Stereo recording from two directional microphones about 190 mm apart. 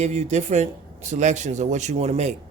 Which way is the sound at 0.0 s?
35° right (ahead or behind).